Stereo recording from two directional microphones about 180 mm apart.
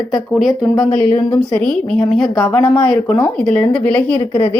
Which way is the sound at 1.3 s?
5° left (ahead or behind).